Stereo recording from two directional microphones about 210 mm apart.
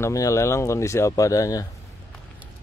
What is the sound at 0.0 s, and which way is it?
A man's voice, 15° left (ahead or behind).